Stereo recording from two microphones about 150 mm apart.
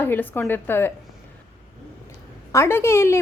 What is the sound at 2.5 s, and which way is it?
Speech, 20° left (ahead or behind).